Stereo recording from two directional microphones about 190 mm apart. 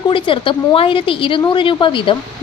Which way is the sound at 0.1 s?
25° left (ahead or behind).